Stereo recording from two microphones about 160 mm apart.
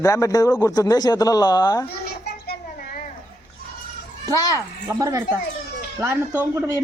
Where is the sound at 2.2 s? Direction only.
70° left (ahead or behind).